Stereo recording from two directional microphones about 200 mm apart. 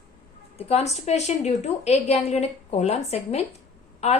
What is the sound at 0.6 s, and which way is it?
A woman's voice, 30° left (ahead or behind).